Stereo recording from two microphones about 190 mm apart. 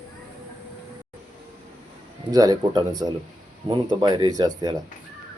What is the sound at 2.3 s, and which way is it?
Speech, 20° right (ahead or behind).